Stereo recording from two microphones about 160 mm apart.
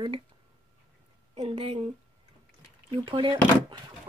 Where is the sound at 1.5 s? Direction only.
30° right (ahead or behind).